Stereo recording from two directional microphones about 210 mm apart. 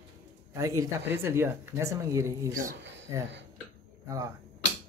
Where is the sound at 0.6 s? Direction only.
15° right (ahead or behind).